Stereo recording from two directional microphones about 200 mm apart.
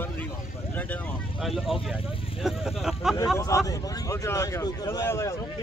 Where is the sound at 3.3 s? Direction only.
15° left (ahead or behind).